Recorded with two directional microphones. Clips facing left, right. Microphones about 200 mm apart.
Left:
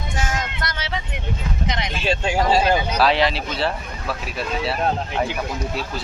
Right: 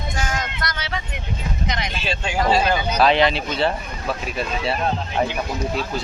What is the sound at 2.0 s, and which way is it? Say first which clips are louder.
Speech: left 2 dB; 40° left (ahead or behind).